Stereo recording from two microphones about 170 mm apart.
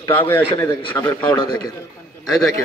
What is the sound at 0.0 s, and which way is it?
A man's voice, 30° left (ahead or behind).